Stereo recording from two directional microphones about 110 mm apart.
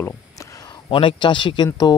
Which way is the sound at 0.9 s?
50° left (ahead or behind).